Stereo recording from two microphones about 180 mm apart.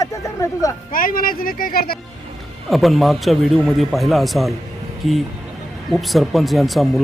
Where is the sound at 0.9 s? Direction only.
50° left (ahead or behind).